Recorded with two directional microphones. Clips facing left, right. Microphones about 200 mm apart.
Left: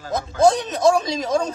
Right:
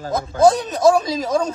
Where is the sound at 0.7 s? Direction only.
5° right (ahead or behind).